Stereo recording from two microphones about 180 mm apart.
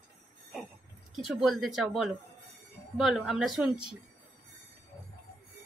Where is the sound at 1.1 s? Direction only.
Centre (ahead or behind).